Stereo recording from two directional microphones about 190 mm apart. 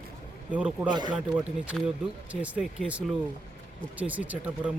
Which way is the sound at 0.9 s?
25° right (ahead or behind).